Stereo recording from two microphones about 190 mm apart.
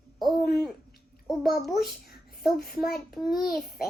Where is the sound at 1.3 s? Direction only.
Centre (ahead or behind).